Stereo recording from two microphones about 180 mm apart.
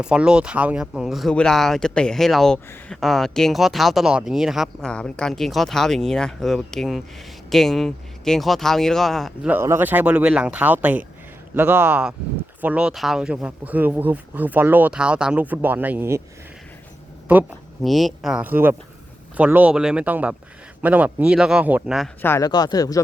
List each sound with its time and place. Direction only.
0.0 s speech: 5° right (ahead or behind)
9.5 s speech: 15° right (ahead or behind)
17.3 s speech: 10° right (ahead or behind)
22.2 s speech: 10° left (ahead or behind)